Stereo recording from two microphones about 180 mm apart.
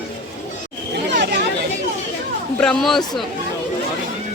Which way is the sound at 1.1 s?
70° right (ahead or behind).